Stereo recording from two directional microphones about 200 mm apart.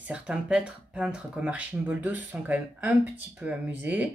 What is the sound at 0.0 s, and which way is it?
Speech, 5° right (ahead or behind).